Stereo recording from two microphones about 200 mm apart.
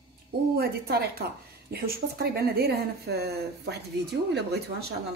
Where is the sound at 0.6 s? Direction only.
50° right (ahead or behind).